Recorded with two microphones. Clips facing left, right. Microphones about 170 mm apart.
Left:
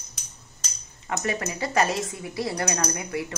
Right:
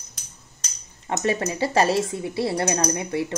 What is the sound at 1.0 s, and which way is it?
A woman's voice, 30° right (ahead or behind).